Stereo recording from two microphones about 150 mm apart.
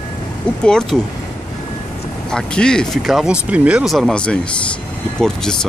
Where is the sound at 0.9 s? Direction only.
Centre (ahead or behind).